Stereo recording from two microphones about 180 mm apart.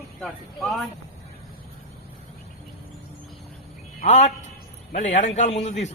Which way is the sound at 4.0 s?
40° left (ahead or behind).